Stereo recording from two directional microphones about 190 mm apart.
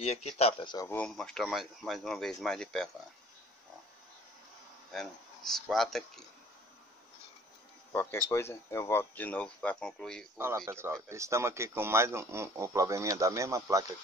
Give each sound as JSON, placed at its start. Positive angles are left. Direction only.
{"t": 0.0, "sound": "speech", "side_deg": 35}
{"t": 0.8, "sound": "speech", "side_deg": 5}
{"t": 4.9, "sound": "speech", "side_deg": 0}
{"t": 7.9, "sound": "speech", "side_deg": 10}
{"t": 10.3, "sound": "speech", "side_deg": -15}